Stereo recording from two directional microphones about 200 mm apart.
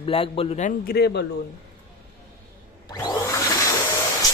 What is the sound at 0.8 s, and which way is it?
Speech, 55° left (ahead or behind).